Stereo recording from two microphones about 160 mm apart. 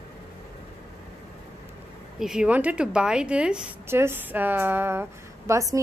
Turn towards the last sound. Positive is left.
turn(degrees=-20)  # may be behind; listen again after turning